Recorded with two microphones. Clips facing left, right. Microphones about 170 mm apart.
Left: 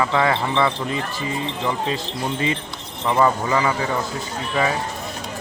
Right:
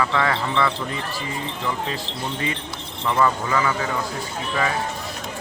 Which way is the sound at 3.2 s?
30° left (ahead or behind).